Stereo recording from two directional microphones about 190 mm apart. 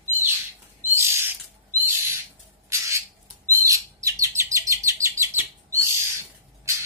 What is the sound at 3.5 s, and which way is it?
Chirp, 15° right (ahead or behind).